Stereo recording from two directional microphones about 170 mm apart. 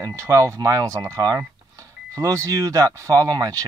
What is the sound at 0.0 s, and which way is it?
Speech, 15° right (ahead or behind).